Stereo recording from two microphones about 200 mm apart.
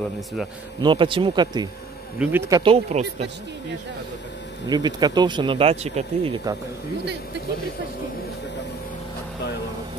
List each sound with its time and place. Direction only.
0.7 s speech: 25° right (ahead or behind)
2.6 s speech: 30° right (ahead or behind)
4.6 s speech: 20° right (ahead or behind)